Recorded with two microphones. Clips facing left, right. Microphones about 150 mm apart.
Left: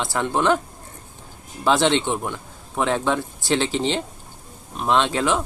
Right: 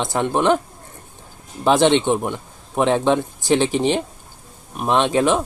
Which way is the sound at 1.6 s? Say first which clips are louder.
Right 4 dB; 15° right (ahead or behind).